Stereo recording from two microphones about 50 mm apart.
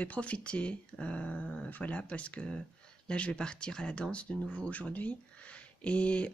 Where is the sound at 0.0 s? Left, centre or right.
Left.